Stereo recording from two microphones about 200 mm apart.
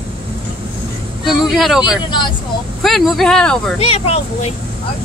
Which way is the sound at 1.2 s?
Centre (ahead or behind).